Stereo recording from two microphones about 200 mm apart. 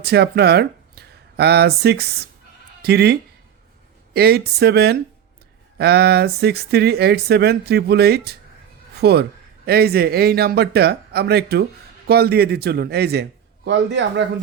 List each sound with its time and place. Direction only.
0.0 s speech: 55° right (ahead or behind)